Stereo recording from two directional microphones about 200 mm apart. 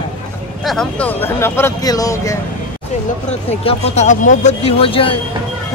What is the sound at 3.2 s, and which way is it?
Speech, 30° left (ahead or behind).